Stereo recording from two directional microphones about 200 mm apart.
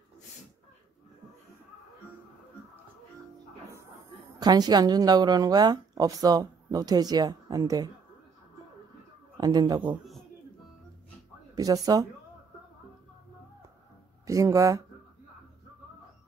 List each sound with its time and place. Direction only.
4.4 s speech: 20° right (ahead or behind)
9.4 s speech: 20° right (ahead or behind)
9.8 s a man's voice: centre (ahead or behind)
11.5 s speech: 15° right (ahead or behind)
14.2 s speech: 15° right (ahead or behind)